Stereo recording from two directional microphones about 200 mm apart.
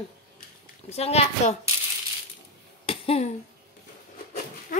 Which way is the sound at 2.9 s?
30° left (ahead or behind).